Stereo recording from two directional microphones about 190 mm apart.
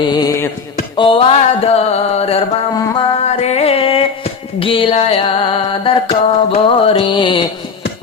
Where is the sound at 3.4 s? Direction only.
30° left (ahead or behind).